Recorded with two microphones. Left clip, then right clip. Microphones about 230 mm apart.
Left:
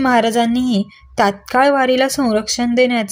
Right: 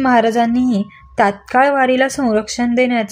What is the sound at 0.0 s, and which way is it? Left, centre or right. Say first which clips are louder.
Speech: right 1 dB; left.